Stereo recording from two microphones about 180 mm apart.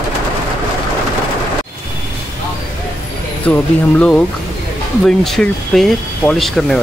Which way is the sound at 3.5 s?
10° left (ahead or behind).